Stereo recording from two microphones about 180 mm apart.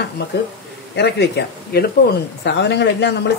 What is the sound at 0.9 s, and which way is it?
A woman's voice, 70° left (ahead or behind).